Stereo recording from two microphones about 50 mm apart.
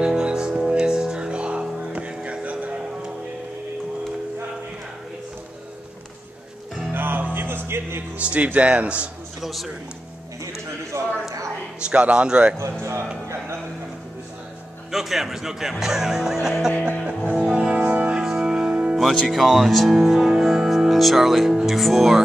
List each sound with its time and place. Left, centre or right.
0.0 s music: centre
6.9 s music: right
8.2 s speech: right
9.4 s music: centre
10.9 s clip-clop: right
11.8 s speech: right
14.9 s speech: centre
15.8 s music: centre
17.2 s music: right
18.2 s music: centre
18.9 s speech: centre